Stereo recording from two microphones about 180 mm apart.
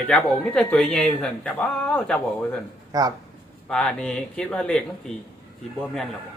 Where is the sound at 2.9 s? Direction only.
20° right (ahead or behind).